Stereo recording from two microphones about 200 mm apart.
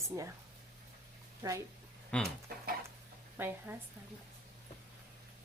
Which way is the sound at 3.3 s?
10° right (ahead or behind).